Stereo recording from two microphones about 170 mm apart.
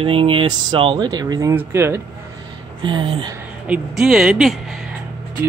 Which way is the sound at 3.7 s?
5° right (ahead or behind).